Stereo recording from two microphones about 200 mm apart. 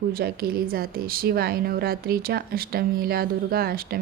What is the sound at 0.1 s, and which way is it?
Speech, 50° right (ahead or behind).